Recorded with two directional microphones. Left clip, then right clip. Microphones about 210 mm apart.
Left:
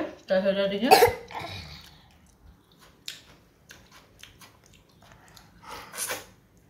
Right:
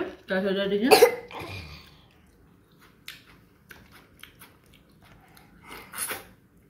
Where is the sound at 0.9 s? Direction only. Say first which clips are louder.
Even; 5° right (ahead or behind).